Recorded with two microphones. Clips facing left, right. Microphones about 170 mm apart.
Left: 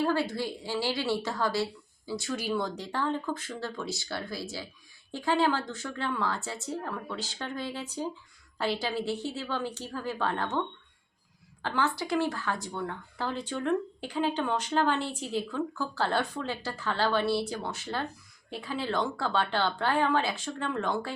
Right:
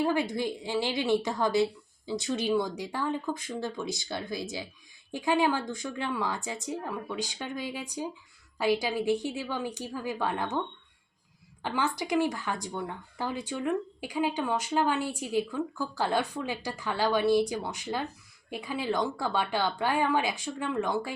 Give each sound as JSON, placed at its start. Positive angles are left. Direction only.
{"t": 0.0, "sound": "a woman's voice", "side_deg": -15}
{"t": 11.6, "sound": "speech", "side_deg": -15}